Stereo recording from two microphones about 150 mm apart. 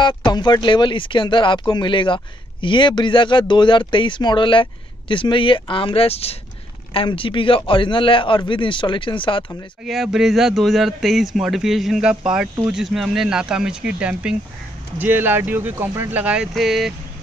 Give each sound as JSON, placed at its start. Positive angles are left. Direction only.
{"t": 0.0, "sound": "speech", "side_deg": 30}
{"t": 9.8, "sound": "a man's voice", "side_deg": 0}